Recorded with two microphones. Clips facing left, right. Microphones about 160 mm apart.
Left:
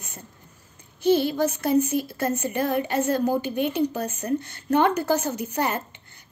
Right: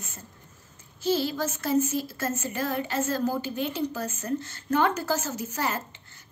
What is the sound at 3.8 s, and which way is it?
A woman's voice, 15° left (ahead or behind).